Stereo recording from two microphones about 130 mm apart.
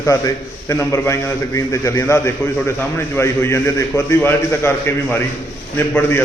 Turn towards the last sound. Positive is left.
turn(degrees=15)  # may be behind; listen again after turning